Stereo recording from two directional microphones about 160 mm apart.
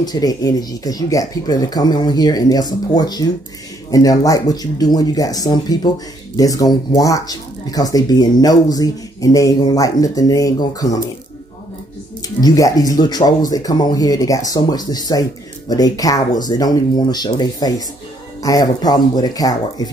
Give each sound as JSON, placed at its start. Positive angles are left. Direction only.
{"t": 0.0, "sound": "speech", "side_deg": 25}
{"t": 12.4, "sound": "speech", "side_deg": 25}